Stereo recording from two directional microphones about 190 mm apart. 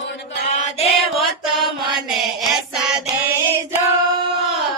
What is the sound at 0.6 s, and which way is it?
Music, 35° left (ahead or behind).